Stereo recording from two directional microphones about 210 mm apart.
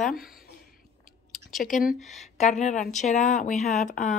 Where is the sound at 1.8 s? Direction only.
35° left (ahead or behind).